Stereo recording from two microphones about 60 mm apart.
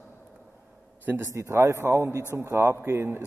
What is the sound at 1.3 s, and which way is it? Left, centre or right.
A man's voice, right.